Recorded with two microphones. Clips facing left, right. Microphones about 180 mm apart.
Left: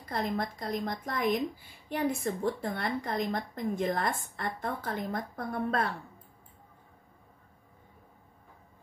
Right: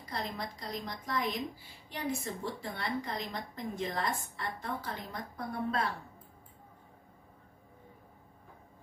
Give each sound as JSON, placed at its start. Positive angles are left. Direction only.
{"t": 0.0, "sound": "a woman's voice", "side_deg": 50}